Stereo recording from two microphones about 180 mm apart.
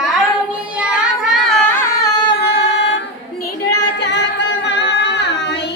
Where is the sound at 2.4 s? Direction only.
85° left.